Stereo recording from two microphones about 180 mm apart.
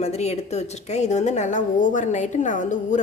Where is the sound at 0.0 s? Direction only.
35° left (ahead or behind).